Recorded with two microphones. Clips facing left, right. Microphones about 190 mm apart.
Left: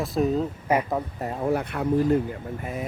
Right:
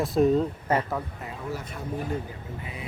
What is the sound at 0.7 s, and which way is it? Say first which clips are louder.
Speech: left 3 dB; 10° left (ahead or behind).